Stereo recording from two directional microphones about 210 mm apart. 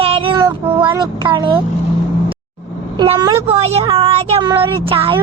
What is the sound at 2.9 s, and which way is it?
A woman's voice, 25° right (ahead or behind).